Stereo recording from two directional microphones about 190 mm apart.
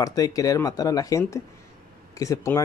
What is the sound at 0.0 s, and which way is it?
Speech, 20° left (ahead or behind).